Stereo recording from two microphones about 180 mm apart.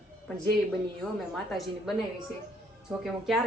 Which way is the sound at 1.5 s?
Centre (ahead or behind).